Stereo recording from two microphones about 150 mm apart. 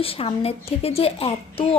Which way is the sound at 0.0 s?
40° left (ahead or behind).